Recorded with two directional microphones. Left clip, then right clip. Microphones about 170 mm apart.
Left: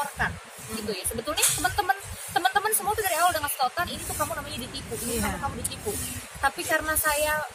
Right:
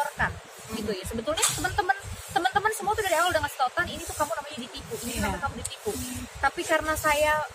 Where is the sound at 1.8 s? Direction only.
5° left (ahead or behind).